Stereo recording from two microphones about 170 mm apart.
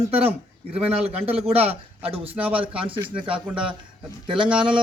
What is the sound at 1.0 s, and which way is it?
A man's voice, 35° right (ahead or behind).